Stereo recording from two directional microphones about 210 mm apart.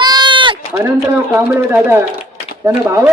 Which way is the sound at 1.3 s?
10° right (ahead or behind).